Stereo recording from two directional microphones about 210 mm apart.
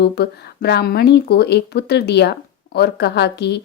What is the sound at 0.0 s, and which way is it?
A woman's voice, 50° left (ahead or behind).